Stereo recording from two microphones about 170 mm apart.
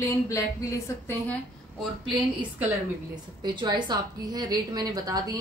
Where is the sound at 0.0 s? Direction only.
20° left (ahead or behind).